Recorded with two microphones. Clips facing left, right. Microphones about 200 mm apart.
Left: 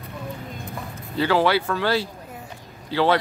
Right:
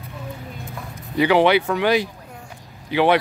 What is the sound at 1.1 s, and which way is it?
Speech, 15° right (ahead or behind).